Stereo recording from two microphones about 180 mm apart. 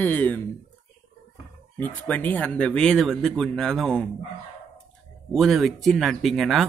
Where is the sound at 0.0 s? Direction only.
10° left (ahead or behind).